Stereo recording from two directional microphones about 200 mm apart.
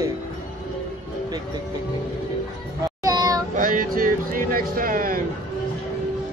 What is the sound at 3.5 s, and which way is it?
Music, 45° right (ahead or behind).